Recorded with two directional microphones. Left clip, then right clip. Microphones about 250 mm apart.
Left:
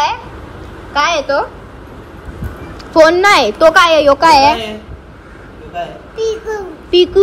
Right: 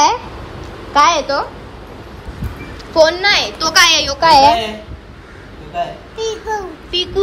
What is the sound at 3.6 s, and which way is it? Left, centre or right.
Speech, centre.